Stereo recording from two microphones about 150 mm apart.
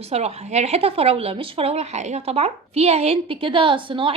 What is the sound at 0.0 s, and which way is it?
Speech, 45° right (ahead or behind).